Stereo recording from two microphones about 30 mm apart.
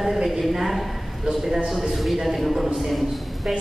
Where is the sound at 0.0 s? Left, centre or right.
Centre.